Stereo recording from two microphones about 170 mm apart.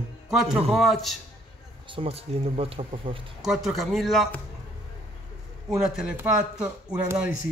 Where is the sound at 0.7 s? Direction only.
Centre (ahead or behind).